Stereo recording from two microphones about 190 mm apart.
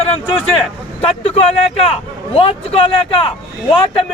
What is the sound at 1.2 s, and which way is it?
A man's voice, 30° left (ahead or behind).